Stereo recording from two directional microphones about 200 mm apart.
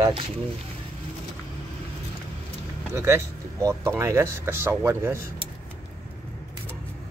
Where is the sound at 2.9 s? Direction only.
15° right (ahead or behind).